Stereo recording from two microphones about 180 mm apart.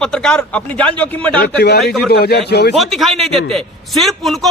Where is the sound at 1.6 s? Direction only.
65° left (ahead or behind).